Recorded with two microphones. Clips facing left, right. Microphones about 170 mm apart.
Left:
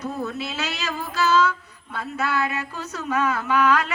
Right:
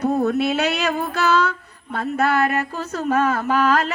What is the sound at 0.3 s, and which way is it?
Speech, 65° right (ahead or behind).